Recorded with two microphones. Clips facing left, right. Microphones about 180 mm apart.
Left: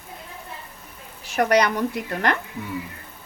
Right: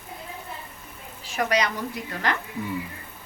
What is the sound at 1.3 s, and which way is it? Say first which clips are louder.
A woman's voice: left 5 dB; 65° left (ahead or behind).